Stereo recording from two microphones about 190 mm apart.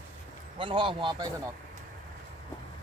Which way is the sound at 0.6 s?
25° right (ahead or behind).